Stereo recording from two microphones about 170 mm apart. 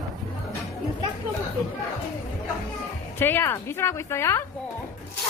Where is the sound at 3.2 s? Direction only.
10° left (ahead or behind).